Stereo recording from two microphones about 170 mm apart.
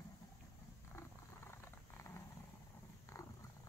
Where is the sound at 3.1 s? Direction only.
15° left (ahead or behind).